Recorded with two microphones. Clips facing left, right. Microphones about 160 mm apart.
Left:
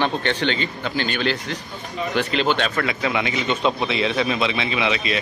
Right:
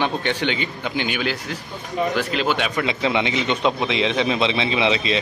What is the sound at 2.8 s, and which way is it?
A man's voice, 25° right (ahead or behind).